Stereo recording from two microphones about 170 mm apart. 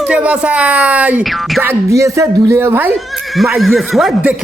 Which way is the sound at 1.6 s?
15° right (ahead or behind).